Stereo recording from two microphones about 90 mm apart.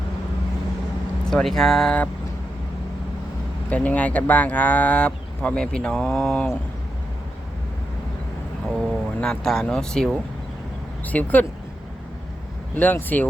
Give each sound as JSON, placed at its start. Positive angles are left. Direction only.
{"t": 1.2, "sound": "speech", "side_deg": 5}
{"t": 3.7, "sound": "speech", "side_deg": 15}
{"t": 8.7, "sound": "speech", "side_deg": 5}
{"t": 11.0, "sound": "speech", "side_deg": 20}
{"t": 12.7, "sound": "speech", "side_deg": 20}